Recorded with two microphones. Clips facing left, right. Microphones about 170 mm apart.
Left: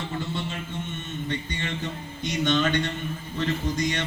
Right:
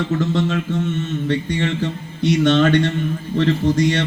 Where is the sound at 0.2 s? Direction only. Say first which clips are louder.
Right 12 dB; 85° right.